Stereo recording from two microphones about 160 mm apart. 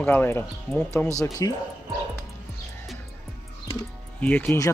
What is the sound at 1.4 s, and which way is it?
Speech, 20° left (ahead or behind).